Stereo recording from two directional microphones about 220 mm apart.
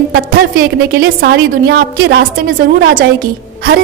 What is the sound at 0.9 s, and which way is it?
A woman's voice, 50° right (ahead or behind).